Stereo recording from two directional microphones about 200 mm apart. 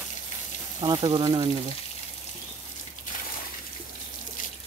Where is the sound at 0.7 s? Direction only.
25° right (ahead or behind).